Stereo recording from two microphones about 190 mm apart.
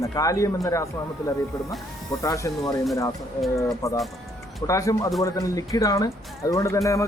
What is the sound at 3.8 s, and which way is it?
Speech, 15° left (ahead or behind).